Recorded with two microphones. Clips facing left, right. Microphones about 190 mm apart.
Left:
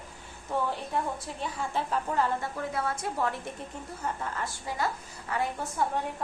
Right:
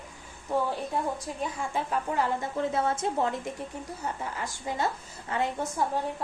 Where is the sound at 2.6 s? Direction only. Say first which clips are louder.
Right 5 dB; 25° right (ahead or behind).